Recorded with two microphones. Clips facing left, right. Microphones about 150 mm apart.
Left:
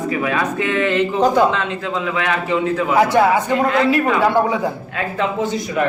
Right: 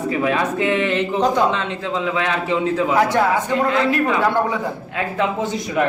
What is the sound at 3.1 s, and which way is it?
Speech, 10° left (ahead or behind).